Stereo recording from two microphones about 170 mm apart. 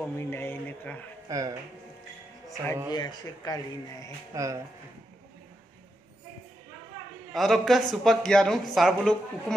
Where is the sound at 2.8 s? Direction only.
25° left (ahead or behind).